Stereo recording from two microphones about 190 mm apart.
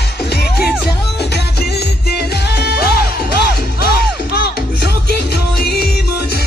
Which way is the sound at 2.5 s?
60° left (ahead or behind).